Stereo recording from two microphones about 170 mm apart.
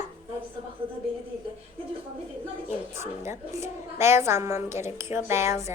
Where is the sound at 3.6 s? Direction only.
15° right (ahead or behind).